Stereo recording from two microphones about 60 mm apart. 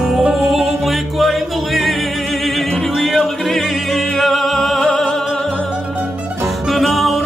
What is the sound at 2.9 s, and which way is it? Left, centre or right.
Music, centre.